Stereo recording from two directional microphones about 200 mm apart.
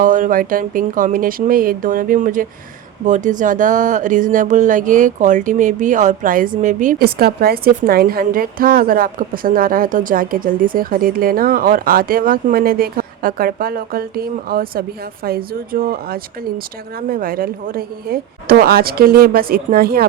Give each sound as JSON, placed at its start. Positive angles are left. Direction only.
{"t": 0.0, "sound": "speech", "side_deg": -40}